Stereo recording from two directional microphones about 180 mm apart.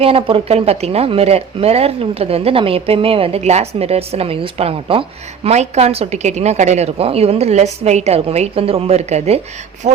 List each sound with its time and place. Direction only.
0.0 s speech: 30° right (ahead or behind)